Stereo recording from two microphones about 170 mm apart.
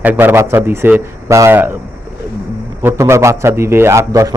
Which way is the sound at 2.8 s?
15° right (ahead or behind).